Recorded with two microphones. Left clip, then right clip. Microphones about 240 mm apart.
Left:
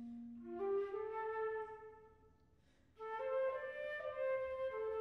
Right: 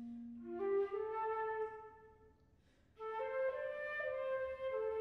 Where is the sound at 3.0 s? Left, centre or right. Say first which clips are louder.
Even; left.